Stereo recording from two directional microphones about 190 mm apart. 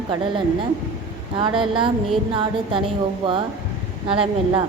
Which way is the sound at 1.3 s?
25° right (ahead or behind).